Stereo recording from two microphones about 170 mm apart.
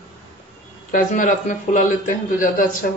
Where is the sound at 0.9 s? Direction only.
50° left (ahead or behind).